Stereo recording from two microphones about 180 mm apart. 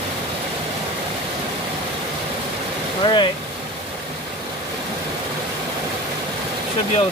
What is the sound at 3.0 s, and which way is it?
Vehicle, 25° left (ahead or behind).